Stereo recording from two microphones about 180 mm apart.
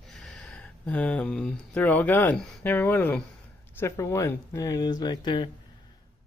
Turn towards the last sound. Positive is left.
turn(degrees=25)  # may be behind; listen again after turning